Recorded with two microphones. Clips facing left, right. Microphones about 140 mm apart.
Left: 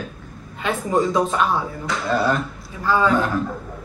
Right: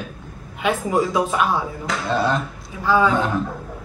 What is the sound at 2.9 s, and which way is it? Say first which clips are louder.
Speech: right 1 dB; 10° right (ahead or behind).